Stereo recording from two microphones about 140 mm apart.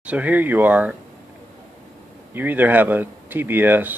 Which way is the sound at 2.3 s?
15° right (ahead or behind).